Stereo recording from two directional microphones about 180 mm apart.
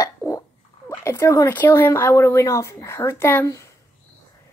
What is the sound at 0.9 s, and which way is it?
Speech, 15° left (ahead or behind).